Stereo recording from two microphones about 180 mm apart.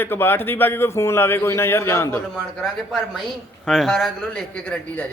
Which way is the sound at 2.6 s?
Centre (ahead or behind).